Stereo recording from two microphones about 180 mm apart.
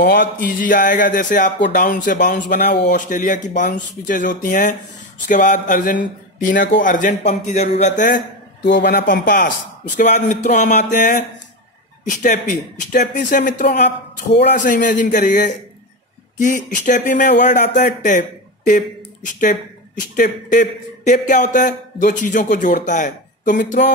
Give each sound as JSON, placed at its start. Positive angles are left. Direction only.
{"t": 0.0, "sound": "a man's voice", "side_deg": 60}
{"t": 2.5, "sound": "a man's voice", "side_deg": 65}
{"t": 3.1, "sound": "a man's voice", "side_deg": 50}
{"t": 8.6, "sound": "a man's voice", "side_deg": 70}
{"t": 9.9, "sound": "a man's voice", "side_deg": 45}